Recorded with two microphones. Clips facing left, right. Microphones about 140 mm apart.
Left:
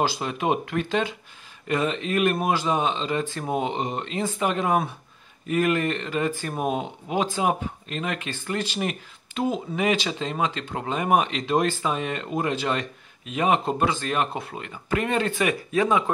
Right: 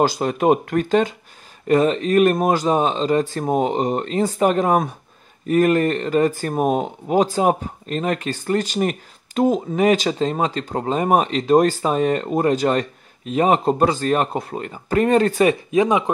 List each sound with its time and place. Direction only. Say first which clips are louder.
0.0 s speech: right 7 dB; 45° right (ahead or behind)
15.7 s speech: right 5 dB; 20° right (ahead or behind)